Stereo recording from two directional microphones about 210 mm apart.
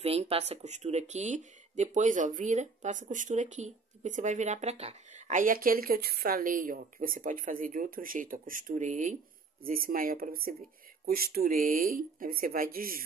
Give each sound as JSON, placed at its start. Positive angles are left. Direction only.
{"t": 0.0, "sound": "speech", "side_deg": -30}